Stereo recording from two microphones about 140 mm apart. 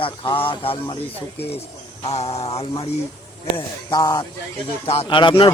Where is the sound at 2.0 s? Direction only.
50° left (ahead or behind).